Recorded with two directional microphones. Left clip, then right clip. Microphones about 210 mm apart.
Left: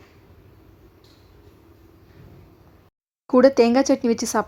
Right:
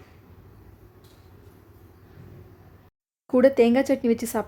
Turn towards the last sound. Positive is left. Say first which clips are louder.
# left 3 dB
turn(degrees=10)  # may be behind; listen again after turning